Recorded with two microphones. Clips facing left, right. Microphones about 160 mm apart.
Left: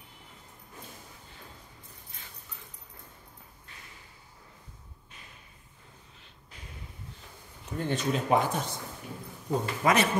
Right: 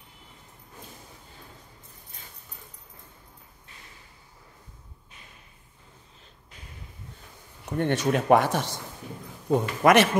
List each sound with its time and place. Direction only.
7.6 s a man's voice: 65° right (ahead or behind)